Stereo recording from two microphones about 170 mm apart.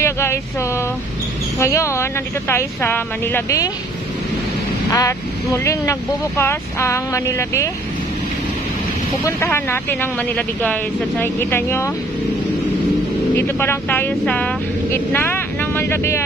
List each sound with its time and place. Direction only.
0.0 s speech: 15° left (ahead or behind)
4.9 s speech: 20° left (ahead or behind)
9.2 s speech: 15° left (ahead or behind)
13.4 s speech: 15° left (ahead or behind)